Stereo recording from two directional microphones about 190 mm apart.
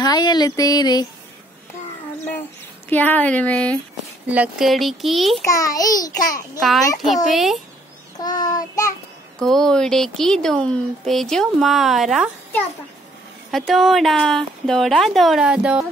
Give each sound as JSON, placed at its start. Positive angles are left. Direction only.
{"t": 0.0, "sound": "a sound", "side_deg": 20}
{"t": 2.9, "sound": "speech", "side_deg": 10}
{"t": 4.3, "sound": "speech", "side_deg": -5}
{"t": 5.5, "sound": "a sound", "side_deg": 20}
{"t": 6.6, "sound": "speech", "side_deg": 0}
{"t": 8.2, "sound": "child singing", "side_deg": 20}
{"t": 9.4, "sound": "speech", "side_deg": 5}
{"t": 13.5, "sound": "speech", "side_deg": 0}